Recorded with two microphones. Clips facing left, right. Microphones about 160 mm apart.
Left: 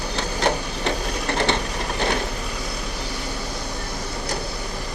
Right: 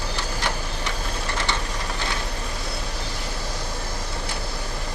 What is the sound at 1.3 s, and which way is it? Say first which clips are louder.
Vehicle: left 7 dB; 65° left (ahead or behind).